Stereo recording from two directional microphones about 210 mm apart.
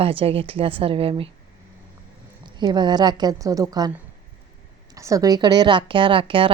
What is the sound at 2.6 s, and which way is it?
A woman's voice, 20° right (ahead or behind).